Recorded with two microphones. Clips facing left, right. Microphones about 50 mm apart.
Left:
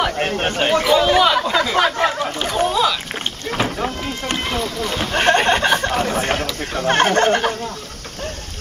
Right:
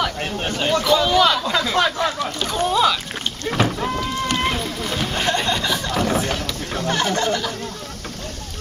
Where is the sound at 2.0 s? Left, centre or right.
Left.